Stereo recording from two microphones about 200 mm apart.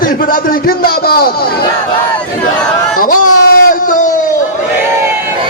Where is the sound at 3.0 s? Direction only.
45° left (ahead or behind).